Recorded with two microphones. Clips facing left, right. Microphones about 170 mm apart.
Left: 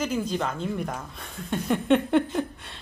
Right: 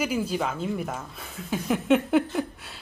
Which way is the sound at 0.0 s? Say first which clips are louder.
Even; 10° right (ahead or behind).